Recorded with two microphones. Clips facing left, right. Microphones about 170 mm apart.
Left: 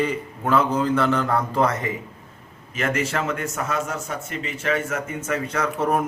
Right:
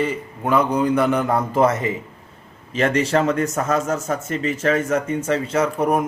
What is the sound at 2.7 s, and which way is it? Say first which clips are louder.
Speech: right 6 dB; 35° right (ahead or behind).